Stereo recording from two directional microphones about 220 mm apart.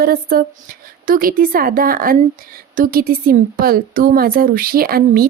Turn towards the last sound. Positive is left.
turn(degrees=-40)  # may be behind; listen again after turning